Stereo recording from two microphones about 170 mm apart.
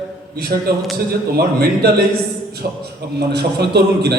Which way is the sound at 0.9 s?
65° right (ahead or behind).